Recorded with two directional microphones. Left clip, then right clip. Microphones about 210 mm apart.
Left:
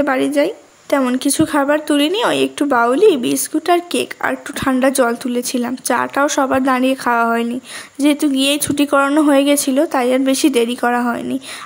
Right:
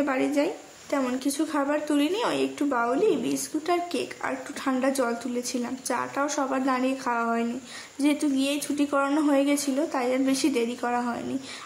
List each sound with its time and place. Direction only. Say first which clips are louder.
0.0 s a woman's voice: left 10 dB; 35° left (ahead or behind)